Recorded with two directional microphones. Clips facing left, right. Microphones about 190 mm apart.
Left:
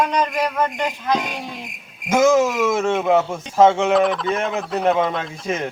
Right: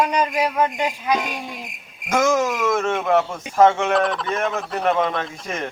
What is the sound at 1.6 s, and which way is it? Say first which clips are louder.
Speech: left 2 dB; centre (ahead or behind).